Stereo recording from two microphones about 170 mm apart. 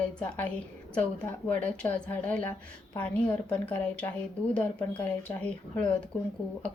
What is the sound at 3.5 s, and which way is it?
A woman's voice, 5° left (ahead or behind).